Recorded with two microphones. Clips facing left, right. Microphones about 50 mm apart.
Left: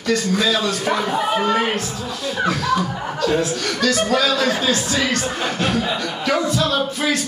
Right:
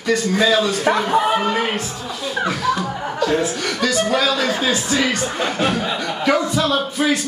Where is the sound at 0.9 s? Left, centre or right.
Right.